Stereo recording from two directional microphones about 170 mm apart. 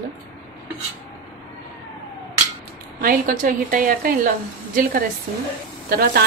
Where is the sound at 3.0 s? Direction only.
50° right (ahead or behind).